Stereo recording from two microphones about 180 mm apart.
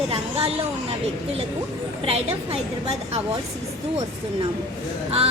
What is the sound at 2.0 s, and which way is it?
Speech, 35° right (ahead or behind).